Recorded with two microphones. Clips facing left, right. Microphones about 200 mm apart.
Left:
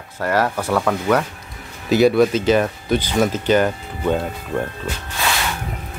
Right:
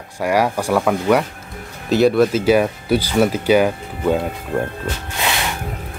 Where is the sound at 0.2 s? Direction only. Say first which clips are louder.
Right 2 dB; 10° right (ahead or behind).